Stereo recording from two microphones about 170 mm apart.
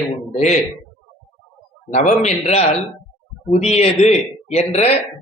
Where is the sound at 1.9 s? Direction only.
45° left (ahead or behind).